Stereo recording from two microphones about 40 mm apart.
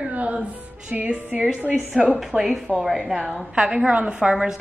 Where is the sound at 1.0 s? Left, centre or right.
Right.